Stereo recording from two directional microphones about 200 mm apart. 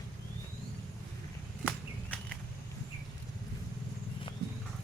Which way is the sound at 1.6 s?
5° left (ahead or behind).